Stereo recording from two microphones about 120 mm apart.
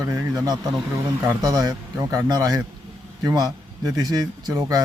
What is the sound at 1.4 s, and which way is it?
Speech, 30° right (ahead or behind).